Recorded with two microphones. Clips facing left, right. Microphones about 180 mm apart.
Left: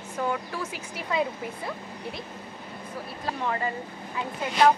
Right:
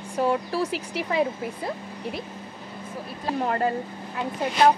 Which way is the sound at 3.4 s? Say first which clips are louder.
Right 5 dB; 50° right (ahead or behind).